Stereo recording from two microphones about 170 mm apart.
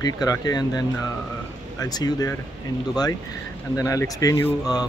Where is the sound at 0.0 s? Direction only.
25° left (ahead or behind).